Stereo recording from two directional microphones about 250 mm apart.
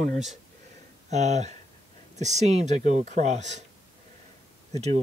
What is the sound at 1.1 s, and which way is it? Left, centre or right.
Speech, right.